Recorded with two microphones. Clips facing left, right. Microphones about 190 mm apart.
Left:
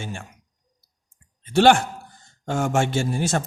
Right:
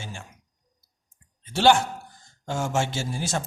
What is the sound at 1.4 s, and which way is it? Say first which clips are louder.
Speech: left 3 dB; 55° left (ahead or behind).